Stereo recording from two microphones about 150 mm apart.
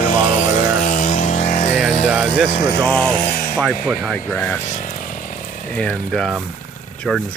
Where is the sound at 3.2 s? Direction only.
60° left (ahead or behind).